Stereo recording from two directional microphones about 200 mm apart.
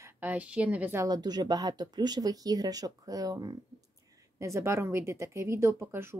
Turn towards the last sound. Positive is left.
turn(degrees=-10)  # may be behind; listen again after turning